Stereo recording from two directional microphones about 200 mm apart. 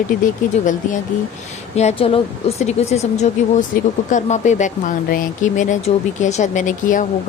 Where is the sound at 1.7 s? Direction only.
30° left (ahead or behind).